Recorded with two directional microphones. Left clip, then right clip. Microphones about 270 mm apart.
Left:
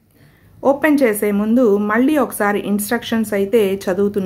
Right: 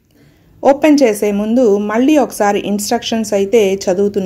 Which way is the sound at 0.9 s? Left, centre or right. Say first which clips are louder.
Right 3 dB; centre.